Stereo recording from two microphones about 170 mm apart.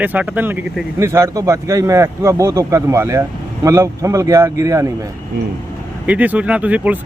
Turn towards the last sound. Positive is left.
turn(degrees=-10)  # may be behind; listen again after turning